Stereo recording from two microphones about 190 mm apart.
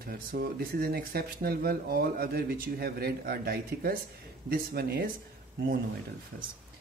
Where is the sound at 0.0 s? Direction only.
50° right (ahead or behind).